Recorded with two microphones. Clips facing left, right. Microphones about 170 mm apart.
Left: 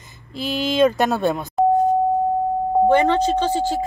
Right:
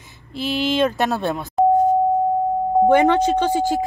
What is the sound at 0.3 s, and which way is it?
Speech, centre (ahead or behind).